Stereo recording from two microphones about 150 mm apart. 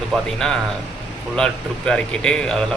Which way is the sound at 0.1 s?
5° left (ahead or behind).